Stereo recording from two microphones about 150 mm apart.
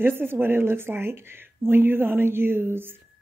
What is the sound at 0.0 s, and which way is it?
Speech, 15° right (ahead or behind).